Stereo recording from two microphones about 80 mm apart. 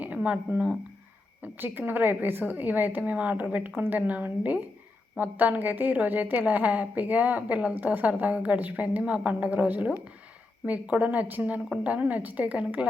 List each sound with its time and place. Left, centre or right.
0.0 s speech: centre
1.4 s a woman's voice: right